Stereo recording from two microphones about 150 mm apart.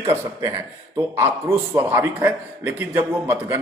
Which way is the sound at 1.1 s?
15° right (ahead or behind).